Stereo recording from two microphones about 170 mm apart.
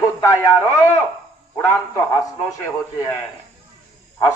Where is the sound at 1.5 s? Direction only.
15° left (ahead or behind).